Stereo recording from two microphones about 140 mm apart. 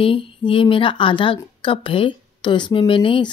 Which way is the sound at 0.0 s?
40° left (ahead or behind).